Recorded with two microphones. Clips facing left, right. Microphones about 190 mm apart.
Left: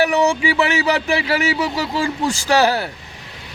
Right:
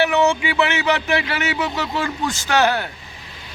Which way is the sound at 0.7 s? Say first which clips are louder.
Left 2 dB; 35° left (ahead or behind).